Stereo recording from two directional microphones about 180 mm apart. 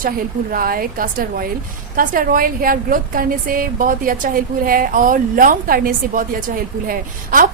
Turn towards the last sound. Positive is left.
turn(degrees=-50)  # may be behind; listen again after turning